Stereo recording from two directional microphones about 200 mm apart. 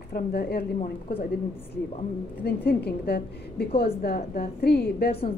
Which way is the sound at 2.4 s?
50° left (ahead or behind).